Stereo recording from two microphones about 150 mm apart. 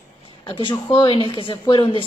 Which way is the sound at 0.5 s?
35° left (ahead or behind).